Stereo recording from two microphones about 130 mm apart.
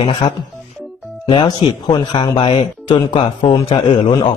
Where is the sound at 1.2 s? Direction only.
35° left (ahead or behind).